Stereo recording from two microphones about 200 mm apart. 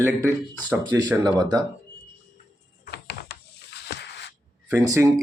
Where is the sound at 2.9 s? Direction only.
55° left (ahead or behind).